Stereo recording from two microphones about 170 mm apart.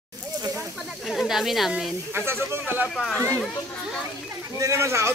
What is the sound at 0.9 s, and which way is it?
Speech, centre (ahead or behind).